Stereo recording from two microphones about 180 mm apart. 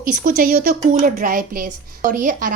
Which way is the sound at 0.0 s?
50° right (ahead or behind).